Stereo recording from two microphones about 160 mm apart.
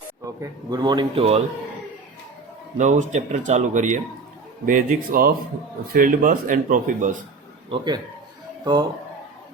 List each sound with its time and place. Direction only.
0.3 s a man's voice: 25° right (ahead or behind)
2.7 s speech: 50° right (ahead or behind)
7.7 s a man's voice: 25° right (ahead or behind)